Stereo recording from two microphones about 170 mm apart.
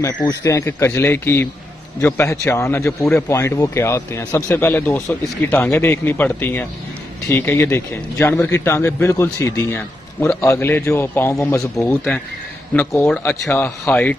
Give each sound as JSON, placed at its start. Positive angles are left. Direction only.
{"t": 0.0, "sound": "a man's voice", "side_deg": 20}